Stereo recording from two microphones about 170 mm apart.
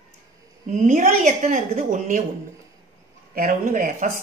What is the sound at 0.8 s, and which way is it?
A woman's voice, 50° right (ahead or behind).